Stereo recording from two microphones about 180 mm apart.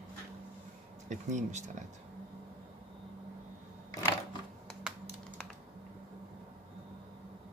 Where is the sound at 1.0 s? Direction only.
40° right (ahead or behind).